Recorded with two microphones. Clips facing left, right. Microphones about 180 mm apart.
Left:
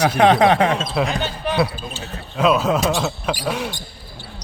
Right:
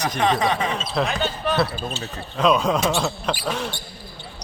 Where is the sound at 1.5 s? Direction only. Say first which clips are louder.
Left 2 dB; 10° left (ahead or behind).